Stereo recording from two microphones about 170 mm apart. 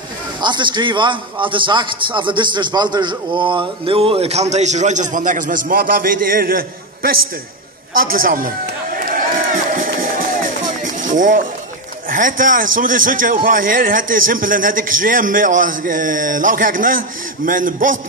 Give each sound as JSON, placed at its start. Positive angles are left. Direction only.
{"t": 0.4, "sound": "a man's voice", "side_deg": -25}
{"t": 8.0, "sound": "a sound", "side_deg": -55}
{"t": 12.1, "sound": "a man's voice", "side_deg": -50}